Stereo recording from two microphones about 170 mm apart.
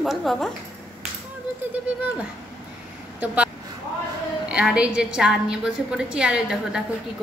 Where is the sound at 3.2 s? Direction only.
10° right (ahead or behind).